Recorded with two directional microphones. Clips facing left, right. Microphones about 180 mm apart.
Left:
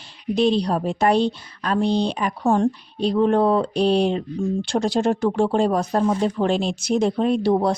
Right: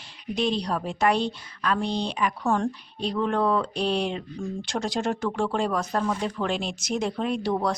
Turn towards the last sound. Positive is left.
turn(degrees=30)  # may be behind; listen again after turning